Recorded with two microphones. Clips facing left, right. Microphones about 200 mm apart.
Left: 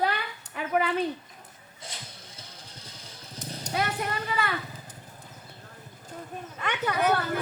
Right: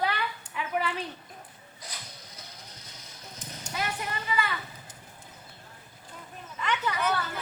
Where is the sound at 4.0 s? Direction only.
60° left (ahead or behind).